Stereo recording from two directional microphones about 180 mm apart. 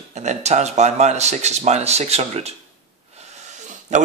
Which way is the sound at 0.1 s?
40° right (ahead or behind).